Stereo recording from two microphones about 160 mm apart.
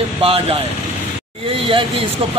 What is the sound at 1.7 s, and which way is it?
Speech, 35° right (ahead or behind).